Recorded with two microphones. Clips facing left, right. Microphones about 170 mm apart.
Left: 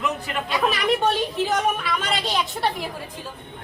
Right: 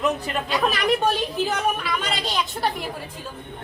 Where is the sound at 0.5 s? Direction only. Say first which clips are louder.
Even; centre (ahead or behind).